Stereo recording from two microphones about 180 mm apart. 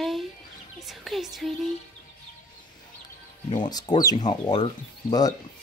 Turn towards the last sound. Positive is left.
turn(degrees=25)  # may be behind; listen again after turning